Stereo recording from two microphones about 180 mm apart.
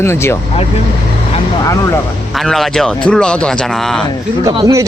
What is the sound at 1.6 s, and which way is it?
Speech, 15° left (ahead or behind).